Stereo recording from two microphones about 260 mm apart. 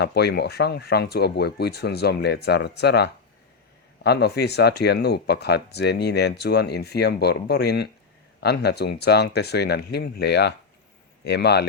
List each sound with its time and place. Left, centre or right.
0.0 s speech: left